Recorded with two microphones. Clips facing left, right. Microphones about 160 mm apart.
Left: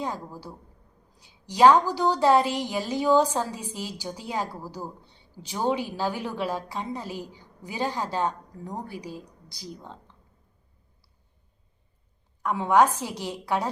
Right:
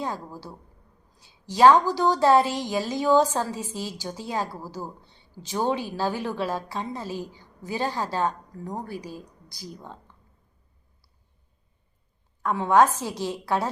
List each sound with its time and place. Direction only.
0.0 s a woman's voice: 15° left (ahead or behind)
12.4 s a woman's voice: 15° left (ahead or behind)